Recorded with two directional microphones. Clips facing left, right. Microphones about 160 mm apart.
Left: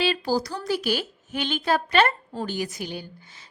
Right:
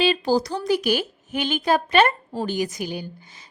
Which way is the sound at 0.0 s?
20° right (ahead or behind).